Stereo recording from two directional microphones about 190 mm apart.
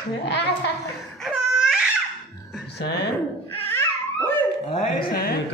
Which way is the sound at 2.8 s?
60° left (ahead or behind).